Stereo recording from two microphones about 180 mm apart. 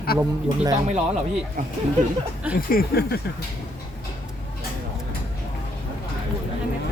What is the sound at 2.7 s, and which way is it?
Speech, 60° left (ahead or behind).